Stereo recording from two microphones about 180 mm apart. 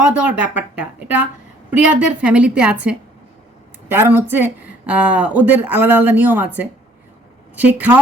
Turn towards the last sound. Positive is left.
turn(degrees=-10)  # may be behind; listen again after turning